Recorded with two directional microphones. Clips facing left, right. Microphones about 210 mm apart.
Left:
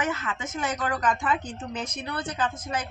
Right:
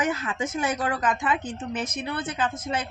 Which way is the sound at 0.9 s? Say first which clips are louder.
Even; 5° right (ahead or behind).